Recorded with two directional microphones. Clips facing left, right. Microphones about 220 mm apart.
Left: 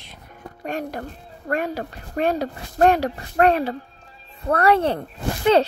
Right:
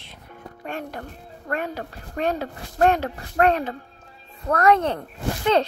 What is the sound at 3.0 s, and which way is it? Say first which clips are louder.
Speech: left 2 dB; 35° left (ahead or behind).